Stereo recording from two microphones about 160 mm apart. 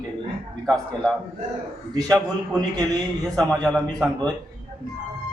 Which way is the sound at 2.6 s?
25° right (ahead or behind).